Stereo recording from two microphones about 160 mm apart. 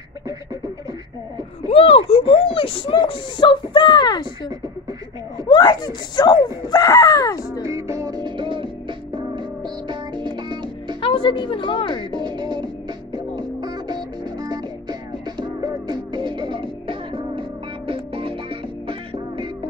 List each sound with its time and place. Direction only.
1.7 s speech: 35° left (ahead or behind)
5.5 s speech: 25° left (ahead or behind)
7.6 s music: 20° right (ahead or behind)
11.0 s speech: 35° left (ahead or behind)
12.1 s speech: 25° right (ahead or behind)
13.1 s music: 25° right (ahead or behind)